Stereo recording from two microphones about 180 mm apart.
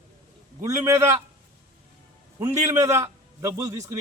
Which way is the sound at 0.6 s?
15° right (ahead or behind).